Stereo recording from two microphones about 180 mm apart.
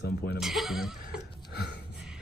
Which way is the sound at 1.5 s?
70° left (ahead or behind).